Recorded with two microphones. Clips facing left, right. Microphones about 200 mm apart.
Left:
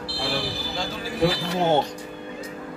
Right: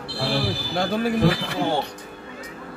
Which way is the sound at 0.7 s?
60° right (ahead or behind).